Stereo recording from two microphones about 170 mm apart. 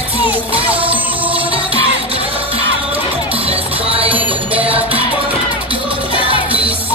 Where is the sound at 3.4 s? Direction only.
35° right (ahead or behind).